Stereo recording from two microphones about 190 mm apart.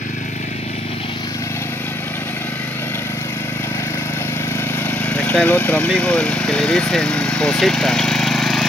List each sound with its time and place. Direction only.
5.1 s speech: 5° left (ahead or behind)